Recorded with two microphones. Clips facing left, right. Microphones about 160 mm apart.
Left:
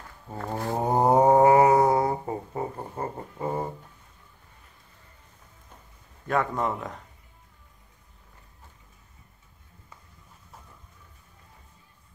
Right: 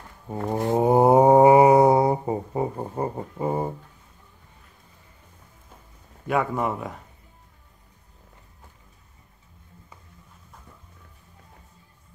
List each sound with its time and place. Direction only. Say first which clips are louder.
0.3 s a sound: right 6 dB; 20° right (ahead or behind)
0.8 s mantra: right 4 dB; 10° right (ahead or behind)
6.2 s a man's voice: right 2 dB; 10° right (ahead or behind)